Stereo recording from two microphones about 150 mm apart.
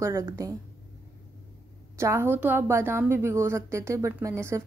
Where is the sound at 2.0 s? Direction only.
15° right (ahead or behind).